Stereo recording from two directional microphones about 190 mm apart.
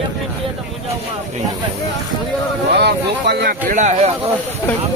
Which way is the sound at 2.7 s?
65° right (ahead or behind).